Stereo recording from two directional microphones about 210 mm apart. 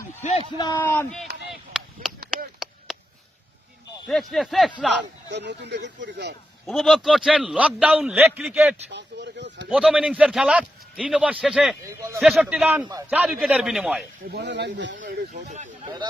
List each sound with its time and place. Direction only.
0.6 s a man's voice: 15° left (ahead or behind)
1.2 s chop: 50° right (ahead or behind)
1.5 s chop: centre (ahead or behind)
2.3 s a sound: centre (ahead or behind)
4.1 s a man's voice: centre (ahead or behind)
5.3 s speech: 55° right (ahead or behind)
6.6 s a man's voice: centre (ahead or behind)
8.9 s speech: 55° right (ahead or behind)
9.7 s a man's voice: 5° right (ahead or behind)
14.3 s speech: 55° right (ahead or behind)
15.0 s speech: 35° right (ahead or behind)